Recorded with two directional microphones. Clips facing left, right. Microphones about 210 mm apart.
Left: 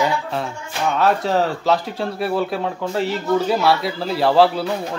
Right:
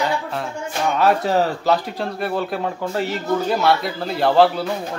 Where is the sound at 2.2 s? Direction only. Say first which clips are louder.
Left 2 dB; centre (ahead or behind).